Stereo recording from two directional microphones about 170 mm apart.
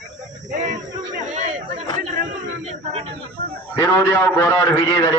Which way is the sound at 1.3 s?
45° right (ahead or behind).